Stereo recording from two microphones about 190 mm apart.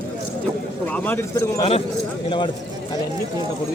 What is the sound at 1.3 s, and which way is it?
Speech, 20° left (ahead or behind).